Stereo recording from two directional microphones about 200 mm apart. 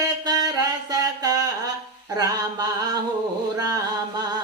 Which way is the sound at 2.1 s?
20° right (ahead or behind).